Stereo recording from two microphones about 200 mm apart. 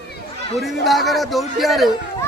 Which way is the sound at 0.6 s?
Centre (ahead or behind).